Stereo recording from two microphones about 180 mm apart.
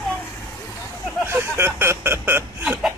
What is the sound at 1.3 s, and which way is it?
Speech, 10° right (ahead or behind).